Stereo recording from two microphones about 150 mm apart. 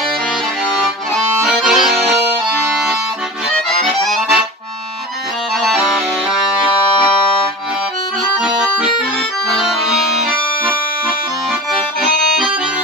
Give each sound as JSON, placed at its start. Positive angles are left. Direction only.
{"t": 1.1, "sound": "accordion", "side_deg": 0}
{"t": 4.0, "sound": "music", "side_deg": 0}
{"t": 5.6, "sound": "music", "side_deg": 0}
{"t": 9.7, "sound": "accordion", "side_deg": -5}
{"t": 11.7, "sound": "accordion", "side_deg": 0}